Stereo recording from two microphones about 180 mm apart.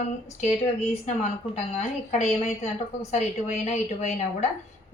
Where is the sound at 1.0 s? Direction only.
40° left (ahead or behind).